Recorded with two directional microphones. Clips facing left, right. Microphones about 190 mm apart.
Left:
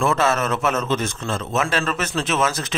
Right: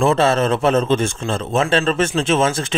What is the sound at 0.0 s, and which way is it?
A man's voice, 30° right (ahead or behind).